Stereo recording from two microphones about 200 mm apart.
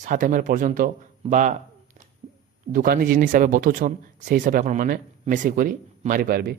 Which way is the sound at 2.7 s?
45° right (ahead or behind).